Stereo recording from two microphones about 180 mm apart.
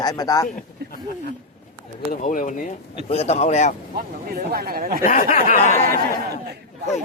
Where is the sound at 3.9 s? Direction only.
55° right (ahead or behind).